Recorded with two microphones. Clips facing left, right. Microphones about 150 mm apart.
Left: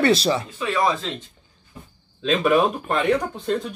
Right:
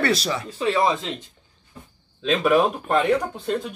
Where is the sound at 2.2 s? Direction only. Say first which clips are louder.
Even; centre (ahead or behind).